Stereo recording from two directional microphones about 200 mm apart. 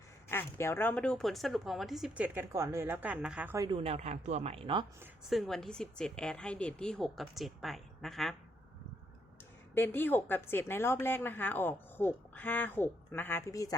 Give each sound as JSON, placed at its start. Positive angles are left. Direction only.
{"t": 0.3, "sound": "speech", "side_deg": 10}
{"t": 3.7, "sound": "speech", "side_deg": -30}
{"t": 5.3, "sound": "speech", "side_deg": 0}
{"t": 9.7, "sound": "a woman's voice", "side_deg": 10}